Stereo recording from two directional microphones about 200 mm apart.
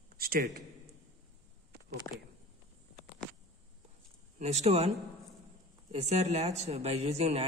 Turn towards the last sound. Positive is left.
turn(degrees=-30)  # may be behind; listen again after turning